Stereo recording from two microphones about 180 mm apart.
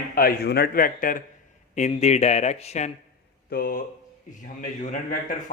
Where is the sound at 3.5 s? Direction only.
55° left (ahead or behind).